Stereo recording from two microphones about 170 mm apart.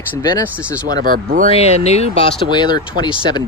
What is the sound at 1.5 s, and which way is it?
Speech, 40° left (ahead or behind).